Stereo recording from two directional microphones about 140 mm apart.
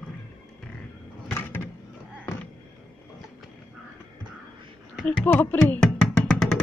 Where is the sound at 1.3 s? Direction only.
15° left (ahead or behind).